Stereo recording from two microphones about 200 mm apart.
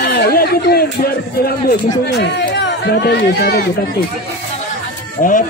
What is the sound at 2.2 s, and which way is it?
Speech, 55° left (ahead or behind).